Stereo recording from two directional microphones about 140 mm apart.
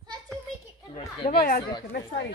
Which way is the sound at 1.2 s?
80° left.